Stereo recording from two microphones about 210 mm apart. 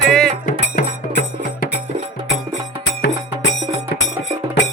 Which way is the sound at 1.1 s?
50° left (ahead or behind).